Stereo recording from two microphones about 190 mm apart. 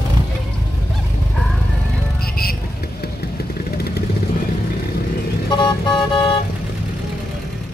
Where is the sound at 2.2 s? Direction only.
55° left (ahead or behind).